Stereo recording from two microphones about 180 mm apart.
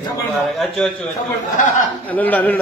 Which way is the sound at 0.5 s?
Centre (ahead or behind).